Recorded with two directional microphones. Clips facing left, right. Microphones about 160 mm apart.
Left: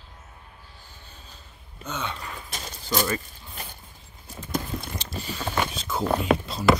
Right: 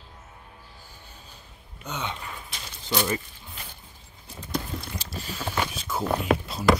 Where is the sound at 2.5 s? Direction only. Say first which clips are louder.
Left 4 dB; 45° left (ahead or behind).